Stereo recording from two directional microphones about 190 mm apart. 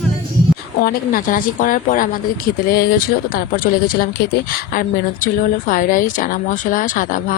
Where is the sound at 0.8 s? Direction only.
50° left (ahead or behind).